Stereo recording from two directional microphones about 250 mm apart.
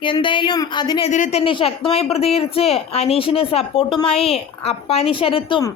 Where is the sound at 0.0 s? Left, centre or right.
Centre.